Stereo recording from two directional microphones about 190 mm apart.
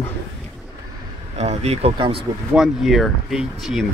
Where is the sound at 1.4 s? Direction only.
35° right (ahead or behind).